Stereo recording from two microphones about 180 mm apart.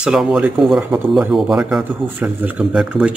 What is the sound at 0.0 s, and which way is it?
A man's voice, 5° right (ahead or behind).